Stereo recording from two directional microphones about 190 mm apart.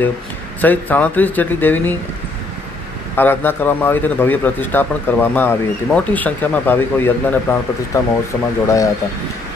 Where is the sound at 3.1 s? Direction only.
10° left (ahead or behind).